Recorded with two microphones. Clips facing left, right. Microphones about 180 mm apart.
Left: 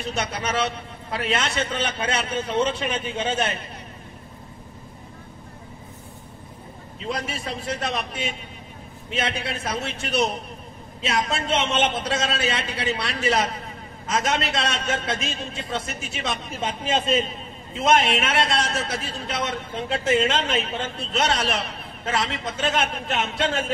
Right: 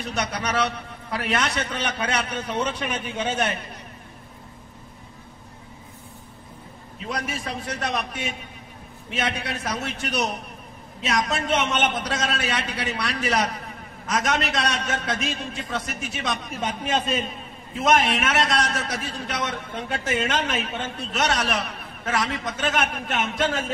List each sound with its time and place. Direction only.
0.0 s a man's voice: 25° left (ahead or behind)
7.1 s a man's voice: 25° left (ahead or behind)
9.2 s a man's voice: 25° left (ahead or behind)